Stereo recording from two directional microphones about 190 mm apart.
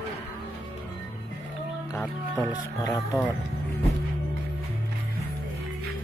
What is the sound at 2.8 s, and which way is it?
Speech, 15° left (ahead or behind).